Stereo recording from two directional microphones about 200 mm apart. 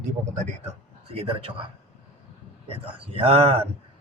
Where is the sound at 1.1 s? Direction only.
30° right (ahead or behind).